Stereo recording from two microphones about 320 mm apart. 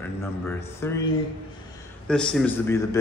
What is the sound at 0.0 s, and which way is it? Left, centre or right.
A man's voice, centre.